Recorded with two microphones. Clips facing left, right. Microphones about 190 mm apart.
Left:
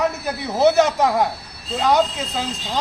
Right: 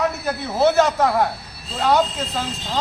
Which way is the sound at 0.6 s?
20° left (ahead or behind).